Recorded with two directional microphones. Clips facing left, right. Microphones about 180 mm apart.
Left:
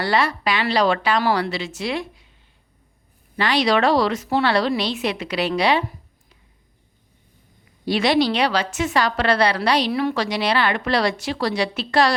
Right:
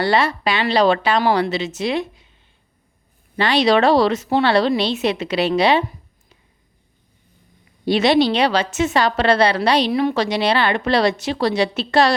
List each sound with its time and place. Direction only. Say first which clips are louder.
0.0 s a woman's voice: right 3 dB; 25° right (ahead or behind)
3.3 s a woman's voice: right 3 dB; 25° right (ahead or behind)
7.9 s a woman's voice: right 3 dB; 25° right (ahead or behind)